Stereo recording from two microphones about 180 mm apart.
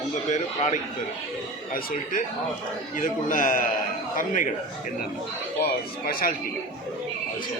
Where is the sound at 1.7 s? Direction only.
55° left (ahead or behind).